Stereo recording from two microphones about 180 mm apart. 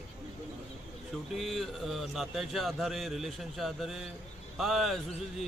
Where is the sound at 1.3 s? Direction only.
Centre (ahead or behind).